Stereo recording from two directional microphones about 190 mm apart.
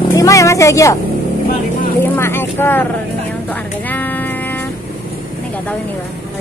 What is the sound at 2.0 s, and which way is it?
Speech, 10° left (ahead or behind).